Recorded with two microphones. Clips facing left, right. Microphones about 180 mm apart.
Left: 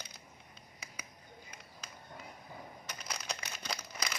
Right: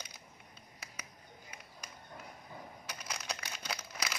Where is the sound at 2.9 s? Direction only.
10° right (ahead or behind).